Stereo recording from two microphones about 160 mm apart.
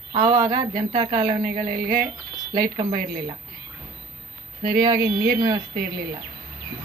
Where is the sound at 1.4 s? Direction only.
65° right (ahead or behind).